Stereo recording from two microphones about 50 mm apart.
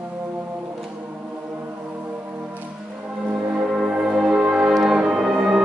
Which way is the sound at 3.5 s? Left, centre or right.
Centre.